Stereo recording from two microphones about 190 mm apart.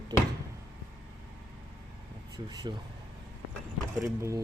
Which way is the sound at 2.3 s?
20° right (ahead or behind).